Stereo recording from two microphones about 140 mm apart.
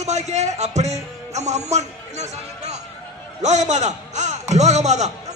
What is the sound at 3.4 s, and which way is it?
Speech, 55° right (ahead or behind).